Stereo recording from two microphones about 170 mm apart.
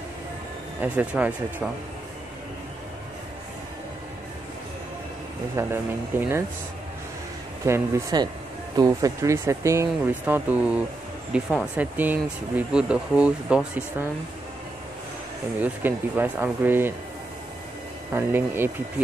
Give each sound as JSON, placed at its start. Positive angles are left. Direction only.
{"t": 0.7, "sound": "speech", "side_deg": -10}
{"t": 5.6, "sound": "speech", "side_deg": -15}
{"t": 7.6, "sound": "speech", "side_deg": -20}
{"t": 15.6, "sound": "speech", "side_deg": -10}
{"t": 18.1, "sound": "speech", "side_deg": -15}